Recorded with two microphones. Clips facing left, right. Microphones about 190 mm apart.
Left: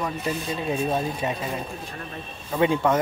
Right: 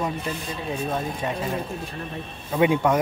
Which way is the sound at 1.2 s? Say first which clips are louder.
Even; 5° left (ahead or behind).